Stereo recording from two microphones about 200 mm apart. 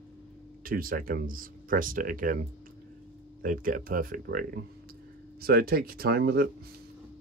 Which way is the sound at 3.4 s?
45° right (ahead or behind).